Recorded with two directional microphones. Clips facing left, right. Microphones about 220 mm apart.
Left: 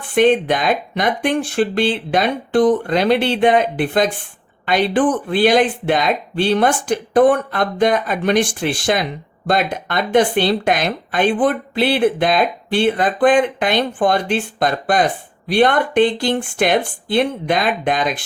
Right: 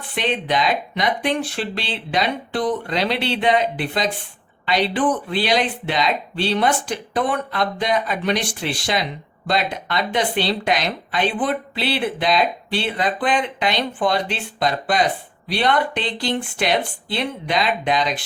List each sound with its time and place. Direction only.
0.0 s speech: 50° left (ahead or behind)